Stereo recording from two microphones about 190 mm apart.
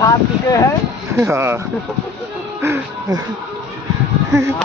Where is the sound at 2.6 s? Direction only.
15° right (ahead or behind).